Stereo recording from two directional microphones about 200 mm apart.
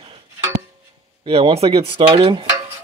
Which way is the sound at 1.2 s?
30° right (ahead or behind).